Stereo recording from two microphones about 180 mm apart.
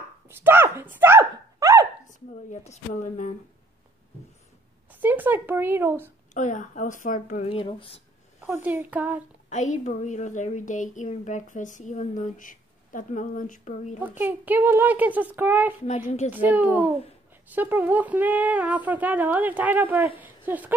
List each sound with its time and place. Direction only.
0.3 s speech: 10° right (ahead or behind)
2.0 s speech: 45° left (ahead or behind)
4.9 s speech: 10° right (ahead or behind)
6.3 s speech: 45° left (ahead or behind)
7.4 s speech: 30° left (ahead or behind)
8.4 s speech: 10° right (ahead or behind)
9.5 s speech: 40° left (ahead or behind)
14.0 s speech: 10° right (ahead or behind)
15.8 s speech: 40° left (ahead or behind)
16.3 s speech: 10° right (ahead or behind)